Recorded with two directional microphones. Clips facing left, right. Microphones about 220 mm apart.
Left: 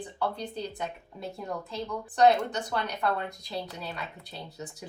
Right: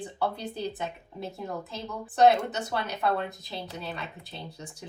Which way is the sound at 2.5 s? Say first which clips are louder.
Even; 5° right (ahead or behind).